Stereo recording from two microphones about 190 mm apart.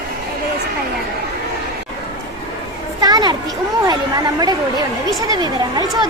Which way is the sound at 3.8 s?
20° right (ahead or behind).